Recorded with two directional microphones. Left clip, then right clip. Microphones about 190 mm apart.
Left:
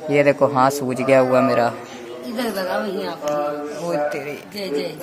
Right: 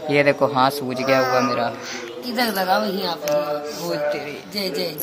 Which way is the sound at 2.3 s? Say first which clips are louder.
Right 3 dB; 45° right (ahead or behind).